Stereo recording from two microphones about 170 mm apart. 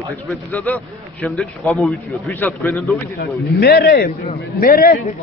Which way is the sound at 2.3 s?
15° left (ahead or behind).